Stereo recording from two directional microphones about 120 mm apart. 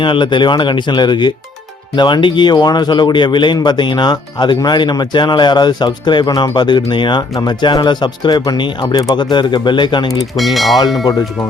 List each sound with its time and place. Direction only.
0.0 s a man's voice: 45° left (ahead or behind)
10.3 s speech: centre (ahead or behind)